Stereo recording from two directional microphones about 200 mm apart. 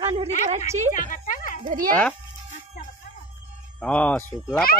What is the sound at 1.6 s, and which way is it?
Speech, 40° right (ahead or behind).